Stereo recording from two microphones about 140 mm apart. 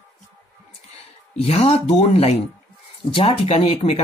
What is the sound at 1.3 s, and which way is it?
Speech, 45° left (ahead or behind).